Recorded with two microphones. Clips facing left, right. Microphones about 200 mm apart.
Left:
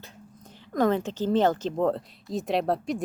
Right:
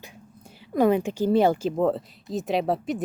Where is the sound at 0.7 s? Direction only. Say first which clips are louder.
Right 3 dB; 10° right (ahead or behind).